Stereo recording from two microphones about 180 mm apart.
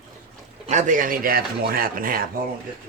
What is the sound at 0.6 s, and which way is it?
Speech, 45° right (ahead or behind).